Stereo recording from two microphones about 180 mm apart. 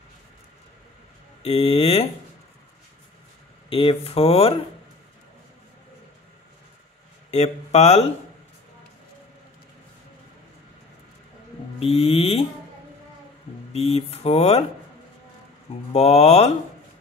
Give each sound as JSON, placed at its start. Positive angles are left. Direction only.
{"t": 1.4, "sound": "speech", "side_deg": 35}
{"t": 3.7, "sound": "speech", "side_deg": 30}
{"t": 7.2, "sound": "speech", "side_deg": 35}
{"t": 11.8, "sound": "speech", "side_deg": 35}
{"t": 13.7, "sound": "speech", "side_deg": 35}
{"t": 15.9, "sound": "speech", "side_deg": 35}